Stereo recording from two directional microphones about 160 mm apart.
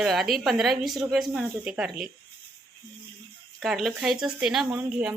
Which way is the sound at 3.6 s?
Centre (ahead or behind).